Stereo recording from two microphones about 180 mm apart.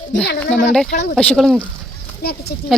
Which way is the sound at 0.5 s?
5° left (ahead or behind).